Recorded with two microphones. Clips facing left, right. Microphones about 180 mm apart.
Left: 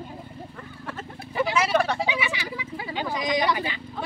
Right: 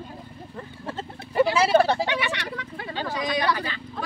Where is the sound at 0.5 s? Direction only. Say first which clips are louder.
Right 6 dB; 25° right (ahead or behind).